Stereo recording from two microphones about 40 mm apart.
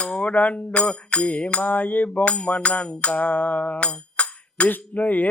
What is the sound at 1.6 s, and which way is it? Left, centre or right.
Music, left.